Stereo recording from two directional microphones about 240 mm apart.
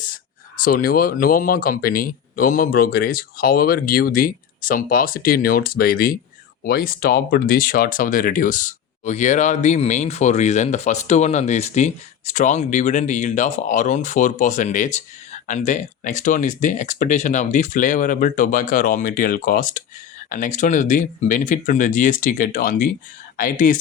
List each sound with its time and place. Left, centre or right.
0.6 s speech: left